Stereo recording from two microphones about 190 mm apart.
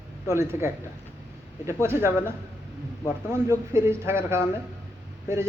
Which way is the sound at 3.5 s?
15° right (ahead or behind).